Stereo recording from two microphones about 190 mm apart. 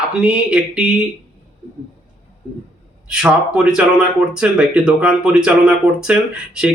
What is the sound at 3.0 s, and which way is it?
Speech, 5° right (ahead or behind).